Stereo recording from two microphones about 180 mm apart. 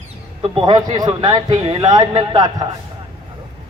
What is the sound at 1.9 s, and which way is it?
Speech, 20° right (ahead or behind).